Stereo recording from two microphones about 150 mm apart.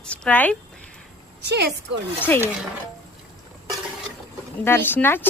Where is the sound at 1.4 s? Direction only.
90° right.